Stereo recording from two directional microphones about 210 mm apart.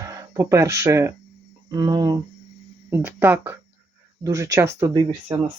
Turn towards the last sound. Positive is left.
turn(degrees=-20)  # may be behind; listen again after turning